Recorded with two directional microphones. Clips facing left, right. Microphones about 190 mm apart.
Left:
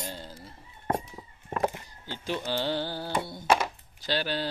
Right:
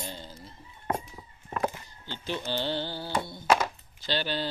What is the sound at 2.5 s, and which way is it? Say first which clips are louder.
Speech: left 1 dB; 10° left (ahead or behind).